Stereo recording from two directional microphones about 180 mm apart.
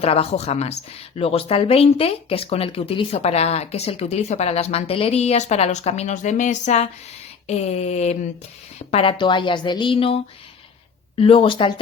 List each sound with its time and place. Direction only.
0.0 s a woman's voice: 35° left (ahead or behind)
11.2 s a woman's voice: 30° left (ahead or behind)